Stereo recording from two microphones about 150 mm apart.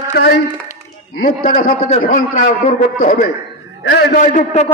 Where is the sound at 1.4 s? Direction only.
70° left (ahead or behind); by 4.7 s 50° left (ahead or behind).